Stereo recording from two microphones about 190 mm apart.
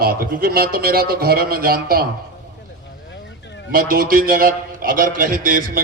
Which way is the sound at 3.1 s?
65° left (ahead or behind).